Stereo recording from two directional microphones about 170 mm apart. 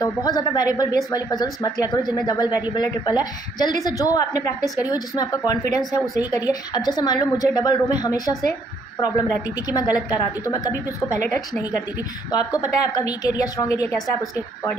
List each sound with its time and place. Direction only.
0.0 s speech: 20° left (ahead or behind)
9.7 s a woman's voice: 20° left (ahead or behind)
12.5 s speech: 20° left (ahead or behind)